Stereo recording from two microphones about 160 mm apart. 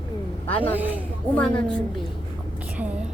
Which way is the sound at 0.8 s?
10° right (ahead or behind).